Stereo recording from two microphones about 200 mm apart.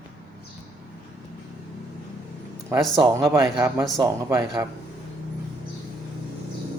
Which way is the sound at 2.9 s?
15° right (ahead or behind).